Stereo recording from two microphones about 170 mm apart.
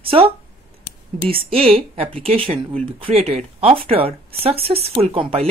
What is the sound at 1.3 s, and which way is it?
Speech, 35° right (ahead or behind).